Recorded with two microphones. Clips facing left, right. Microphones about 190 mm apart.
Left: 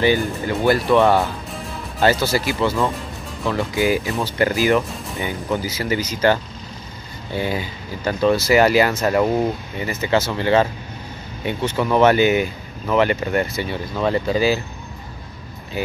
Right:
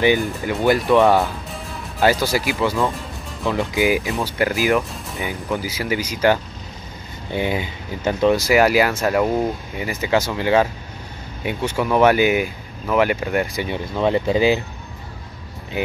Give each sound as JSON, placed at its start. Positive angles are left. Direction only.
{"t": 0.0, "sound": "speech", "side_deg": -15}
{"t": 1.0, "sound": "music", "side_deg": 0}
{"t": 2.2, "sound": "speech", "side_deg": -10}